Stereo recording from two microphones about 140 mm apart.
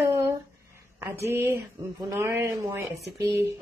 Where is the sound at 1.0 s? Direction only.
15° right (ahead or behind).